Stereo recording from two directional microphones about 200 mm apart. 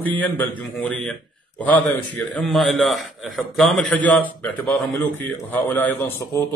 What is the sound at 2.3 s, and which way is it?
A man's voice, centre (ahead or behind).